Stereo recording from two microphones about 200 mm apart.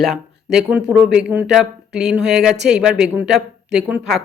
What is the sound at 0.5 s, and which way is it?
Speech, 5° right (ahead or behind).